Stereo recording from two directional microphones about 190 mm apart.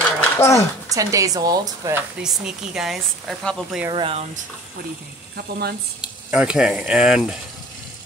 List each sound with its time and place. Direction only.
0.2 s a sound: 15° left (ahead or behind)
0.9 s speech: 15° right (ahead or behind)
2.2 s speech: 5° right (ahead or behind)
3.9 s speech: 30° right (ahead or behind)
5.3 s speech: 55° right (ahead or behind)
5.9 s speech: 5° right (ahead or behind)